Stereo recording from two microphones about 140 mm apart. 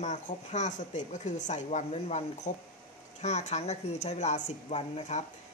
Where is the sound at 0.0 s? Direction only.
60° left (ahead or behind).